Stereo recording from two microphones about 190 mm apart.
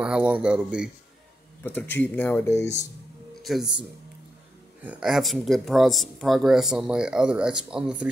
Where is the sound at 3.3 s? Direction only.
Centre (ahead or behind).